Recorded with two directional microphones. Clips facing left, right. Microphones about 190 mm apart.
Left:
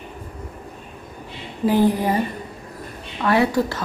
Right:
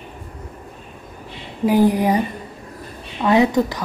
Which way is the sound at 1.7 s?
15° right (ahead or behind).